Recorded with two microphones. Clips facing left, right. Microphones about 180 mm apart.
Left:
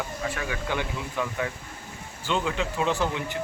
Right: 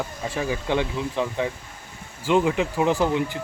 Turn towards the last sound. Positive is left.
turn(degrees=-20)  # may be behind; listen again after turning